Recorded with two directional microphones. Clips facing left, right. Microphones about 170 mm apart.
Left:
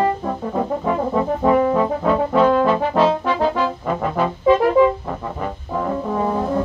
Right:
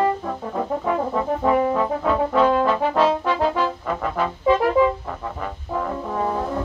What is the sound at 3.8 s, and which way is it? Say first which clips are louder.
Music: left 3 dB; 25° left (ahead or behind).